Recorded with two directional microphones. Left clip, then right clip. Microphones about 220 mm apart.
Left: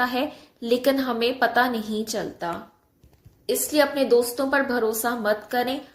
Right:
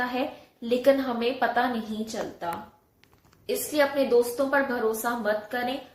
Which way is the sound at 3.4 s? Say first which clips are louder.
Left 3 dB; 50° left (ahead or behind).